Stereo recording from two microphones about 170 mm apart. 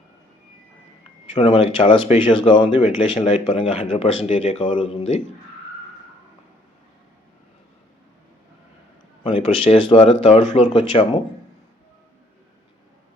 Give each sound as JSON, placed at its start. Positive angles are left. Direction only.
{"t": 1.4, "sound": "speech", "side_deg": 35}
{"t": 9.2, "sound": "speech", "side_deg": 35}